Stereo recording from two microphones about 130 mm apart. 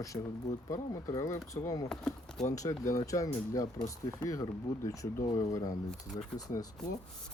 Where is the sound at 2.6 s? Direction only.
25° left (ahead or behind).